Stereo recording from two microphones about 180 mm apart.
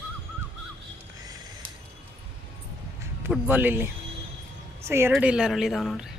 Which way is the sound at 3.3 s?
10° right (ahead or behind).